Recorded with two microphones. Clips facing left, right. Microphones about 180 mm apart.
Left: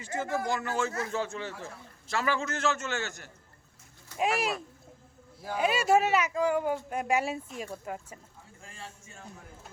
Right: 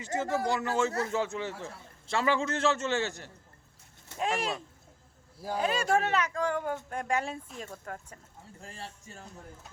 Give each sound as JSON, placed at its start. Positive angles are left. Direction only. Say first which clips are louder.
{"t": 0.0, "sound": "a man's voice", "louder": "right 2 dB", "side_deg": -20}
{"t": 4.2, "sound": "speech", "louder": "left 2 dB", "side_deg": 10}
{"t": 8.6, "sound": "a man's voice", "louder": "right 2 dB", "side_deg": -35}